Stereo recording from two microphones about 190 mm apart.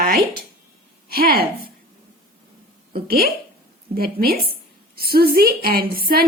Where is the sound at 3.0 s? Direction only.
50° right (ahead or behind).